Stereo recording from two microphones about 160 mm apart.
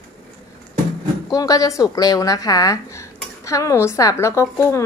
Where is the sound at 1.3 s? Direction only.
20° left (ahead or behind).